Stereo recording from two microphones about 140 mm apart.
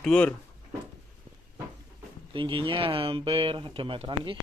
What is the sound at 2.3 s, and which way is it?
Speech, 35° right (ahead or behind).